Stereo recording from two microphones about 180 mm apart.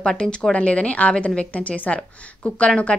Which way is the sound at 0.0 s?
5° left (ahead or behind).